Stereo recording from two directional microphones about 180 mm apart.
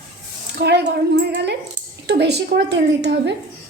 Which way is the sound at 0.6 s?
70° right (ahead or behind).